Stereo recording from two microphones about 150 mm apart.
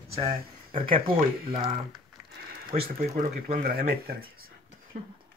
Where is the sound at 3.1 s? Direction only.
60° right (ahead or behind); by 4.1 s 90° right.